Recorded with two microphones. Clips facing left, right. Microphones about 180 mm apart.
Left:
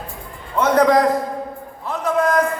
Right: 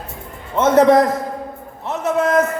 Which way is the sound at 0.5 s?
25° right (ahead or behind).